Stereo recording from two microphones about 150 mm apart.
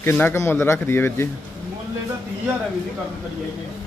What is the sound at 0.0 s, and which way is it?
A man's voice, 15° left (ahead or behind).